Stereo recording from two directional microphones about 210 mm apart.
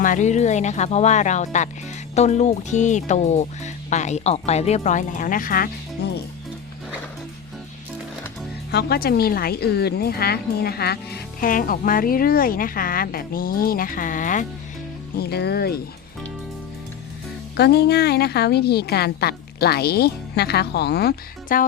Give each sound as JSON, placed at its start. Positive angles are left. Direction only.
{"t": 0.0, "sound": "speech", "side_deg": 35}
{"t": 8.7, "sound": "speech", "side_deg": 50}
{"t": 15.1, "sound": "speech", "side_deg": 50}
{"t": 17.6, "sound": "speech", "side_deg": 50}